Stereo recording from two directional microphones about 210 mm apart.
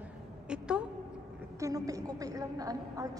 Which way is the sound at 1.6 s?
15° right (ahead or behind).